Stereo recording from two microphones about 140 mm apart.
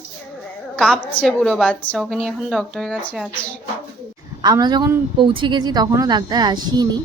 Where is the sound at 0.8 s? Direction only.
5° left (ahead or behind).